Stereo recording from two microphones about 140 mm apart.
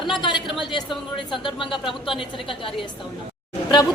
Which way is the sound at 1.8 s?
40° left (ahead or behind).